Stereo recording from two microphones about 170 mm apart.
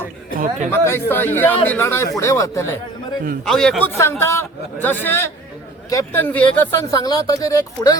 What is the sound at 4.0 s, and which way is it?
A man's voice, 15° left (ahead or behind).